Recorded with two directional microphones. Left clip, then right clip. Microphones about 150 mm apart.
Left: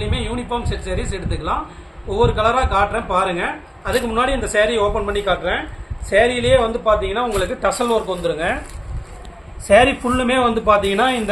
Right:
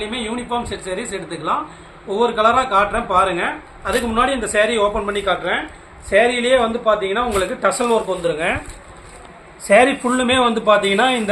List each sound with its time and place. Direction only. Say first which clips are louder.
0.0 s a man's voice: even; 5° right (ahead or behind)
10.0 s a man's voice: right 1 dB; 15° right (ahead or behind)